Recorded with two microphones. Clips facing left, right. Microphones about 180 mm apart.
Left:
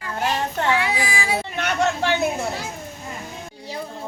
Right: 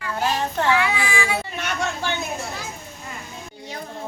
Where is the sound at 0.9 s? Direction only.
40° left (ahead or behind).